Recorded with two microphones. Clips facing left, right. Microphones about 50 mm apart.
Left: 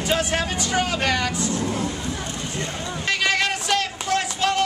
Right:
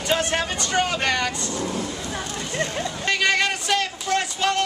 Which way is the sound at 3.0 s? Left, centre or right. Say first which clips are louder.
Right 1 dB; centre.